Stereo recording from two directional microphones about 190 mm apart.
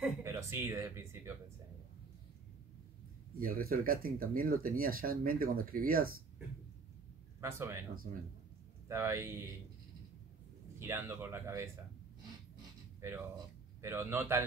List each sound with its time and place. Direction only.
0.0 s a sound: 15° right (ahead or behind)
3.3 s speech: 50° right (ahead or behind)
7.3 s speech: 15° right (ahead or behind)
8.8 s speech: 15° right (ahead or behind)
10.8 s speech: 15° right (ahead or behind)
13.7 s speech: 15° right (ahead or behind)